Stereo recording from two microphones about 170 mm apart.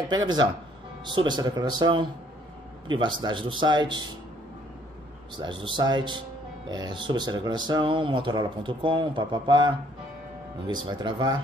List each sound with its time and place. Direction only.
0.1 s speech: 25° right (ahead or behind)
5.4 s speech: 25° right (ahead or behind)